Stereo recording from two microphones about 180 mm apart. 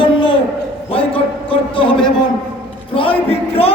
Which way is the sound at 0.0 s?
30° left (ahead or behind).